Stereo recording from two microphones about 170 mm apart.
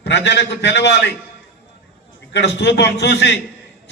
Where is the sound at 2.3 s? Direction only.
80° left.